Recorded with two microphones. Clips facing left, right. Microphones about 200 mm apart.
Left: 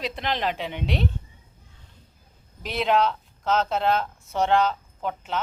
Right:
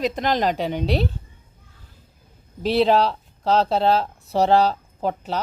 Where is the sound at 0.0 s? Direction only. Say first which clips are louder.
Right 6 dB; 45° right (ahead or behind).